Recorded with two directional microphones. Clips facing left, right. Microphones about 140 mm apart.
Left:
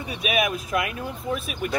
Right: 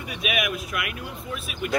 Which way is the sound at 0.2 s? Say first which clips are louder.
Left 3 dB; 35° left (ahead or behind).